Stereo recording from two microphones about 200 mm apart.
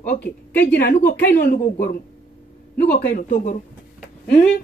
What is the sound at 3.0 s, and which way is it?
Speech, 40° left (ahead or behind).